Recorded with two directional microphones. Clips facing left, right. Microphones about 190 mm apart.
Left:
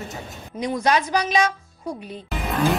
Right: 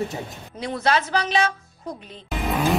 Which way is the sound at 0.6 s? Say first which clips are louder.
Left 2 dB; 15° left (ahead or behind).